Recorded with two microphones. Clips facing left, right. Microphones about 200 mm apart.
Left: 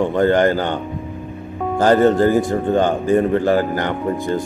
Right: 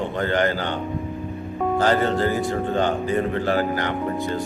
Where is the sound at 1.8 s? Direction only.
45° left (ahead or behind).